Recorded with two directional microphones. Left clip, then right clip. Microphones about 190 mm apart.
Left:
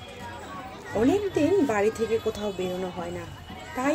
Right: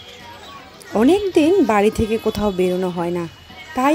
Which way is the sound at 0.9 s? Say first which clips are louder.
Right 8 dB; 45° right (ahead or behind).